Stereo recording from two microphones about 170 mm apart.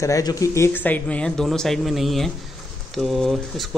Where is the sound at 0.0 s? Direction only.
20° left (ahead or behind).